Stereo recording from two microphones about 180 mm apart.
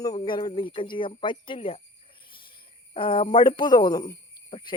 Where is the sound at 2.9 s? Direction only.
30° left (ahead or behind).